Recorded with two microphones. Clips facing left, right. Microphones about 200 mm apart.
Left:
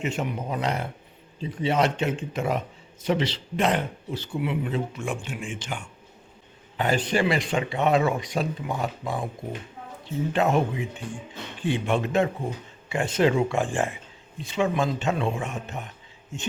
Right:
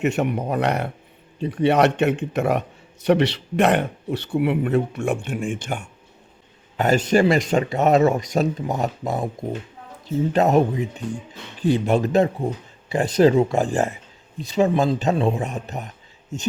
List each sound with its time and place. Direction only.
0.0 s a man's voice: 65° right (ahead or behind)
6.7 s speech: 45° right (ahead or behind)
10.3 s a man's voice: 40° right (ahead or behind)